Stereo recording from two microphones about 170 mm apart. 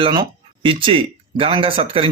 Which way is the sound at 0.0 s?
30° right (ahead or behind).